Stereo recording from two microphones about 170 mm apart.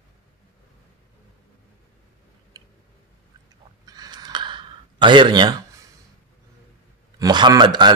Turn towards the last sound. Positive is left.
turn(degrees=-25)  # may be behind; listen again after turning